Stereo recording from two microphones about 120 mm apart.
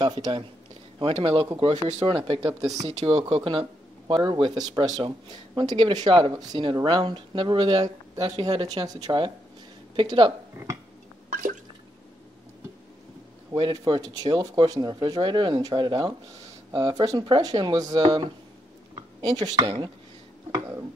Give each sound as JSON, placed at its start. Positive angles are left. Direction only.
{"t": 0.0, "sound": "speech", "side_deg": -40}
{"t": 2.7, "sound": "speech", "side_deg": -65}
{"t": 3.1, "sound": "speech", "side_deg": -50}
{"t": 4.1, "sound": "speech", "side_deg": -30}
{"t": 13.5, "sound": "speech", "side_deg": -40}
{"t": 20.5, "sound": "speech", "side_deg": -25}